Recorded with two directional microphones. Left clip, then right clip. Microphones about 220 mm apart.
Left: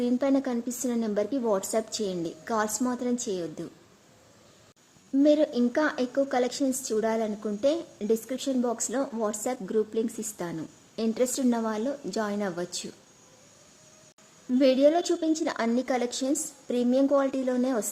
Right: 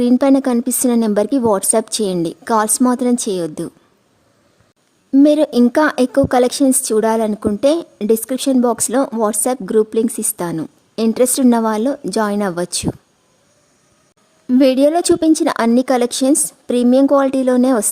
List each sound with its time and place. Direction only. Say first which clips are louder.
0.0 s speech: right 13 dB; 50° right (ahead or behind)
5.1 s speech: right 11 dB; 50° right (ahead or behind)
14.5 s speech: right 9 dB; 55° right (ahead or behind)